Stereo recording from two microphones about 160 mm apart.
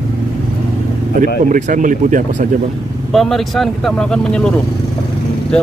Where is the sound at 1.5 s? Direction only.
55° right (ahead or behind).